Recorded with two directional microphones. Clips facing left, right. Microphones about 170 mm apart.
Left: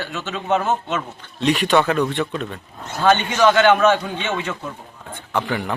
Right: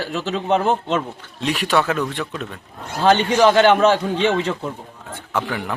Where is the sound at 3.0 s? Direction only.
30° right (ahead or behind).